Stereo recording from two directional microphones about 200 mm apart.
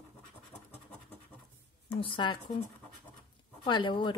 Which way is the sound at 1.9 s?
25° left (ahead or behind).